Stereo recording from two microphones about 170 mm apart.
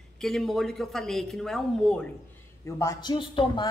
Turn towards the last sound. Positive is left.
turn(degrees=30)  # may be behind; listen again after turning